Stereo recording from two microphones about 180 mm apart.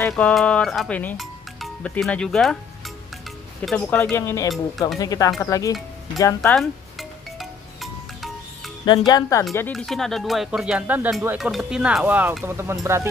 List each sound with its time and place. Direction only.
0.1 s speech: centre (ahead or behind)
3.6 s speech: 5° left (ahead or behind)
6.5 s music: centre (ahead or behind)
8.8 s speech: 25° left (ahead or behind)
9.7 s speech: 5° left (ahead or behind); by 13.1 s 15° right (ahead or behind)